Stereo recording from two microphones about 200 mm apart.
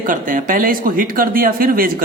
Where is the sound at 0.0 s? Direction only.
40° right (ahead or behind).